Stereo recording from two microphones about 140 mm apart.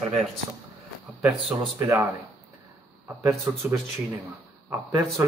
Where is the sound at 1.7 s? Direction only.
15° right (ahead or behind).